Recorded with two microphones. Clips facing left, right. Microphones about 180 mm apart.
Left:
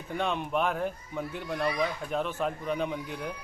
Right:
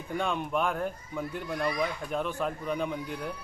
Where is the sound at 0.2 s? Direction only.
Centre (ahead or behind).